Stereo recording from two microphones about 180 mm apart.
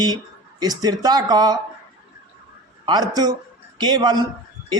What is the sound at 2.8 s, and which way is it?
A man's voice, 25° right (ahead or behind).